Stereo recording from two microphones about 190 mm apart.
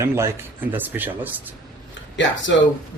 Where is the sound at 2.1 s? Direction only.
70° left (ahead or behind).